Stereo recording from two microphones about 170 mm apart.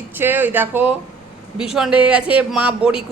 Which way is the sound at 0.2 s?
10° right (ahead or behind).